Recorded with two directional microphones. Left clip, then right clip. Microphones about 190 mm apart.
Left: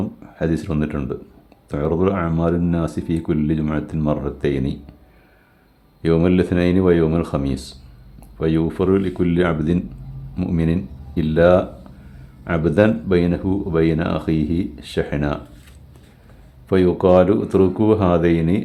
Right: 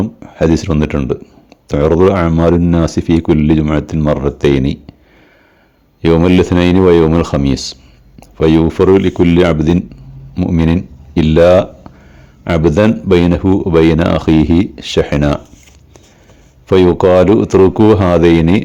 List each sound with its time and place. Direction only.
0.3 s speech: 35° right (ahead or behind)
6.0 s speech: 35° right (ahead or behind)
10.3 s speech: 25° right (ahead or behind)
11.1 s speech: 40° right (ahead or behind)
16.6 s speech: 35° right (ahead or behind)